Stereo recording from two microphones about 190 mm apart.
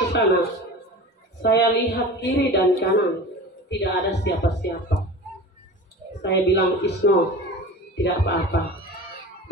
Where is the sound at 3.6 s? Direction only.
65° left (ahead or behind).